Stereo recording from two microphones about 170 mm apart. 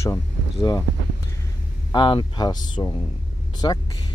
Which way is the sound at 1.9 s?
30° left (ahead or behind).